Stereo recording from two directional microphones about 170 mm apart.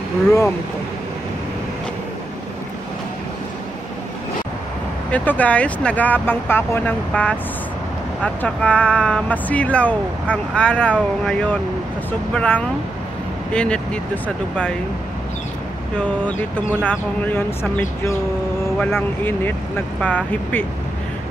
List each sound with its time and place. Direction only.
5.1 s speech: 10° left (ahead or behind)
16.0 s speech: 5° left (ahead or behind)